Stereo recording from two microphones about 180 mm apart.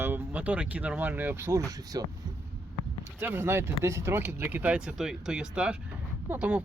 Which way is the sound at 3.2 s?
10° right (ahead or behind).